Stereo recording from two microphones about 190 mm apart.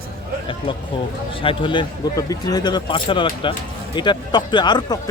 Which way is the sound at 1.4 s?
25° left (ahead or behind).